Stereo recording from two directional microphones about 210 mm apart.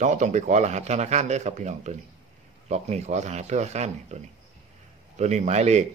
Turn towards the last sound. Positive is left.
turn(degrees=-30)  # may be behind; listen again after turning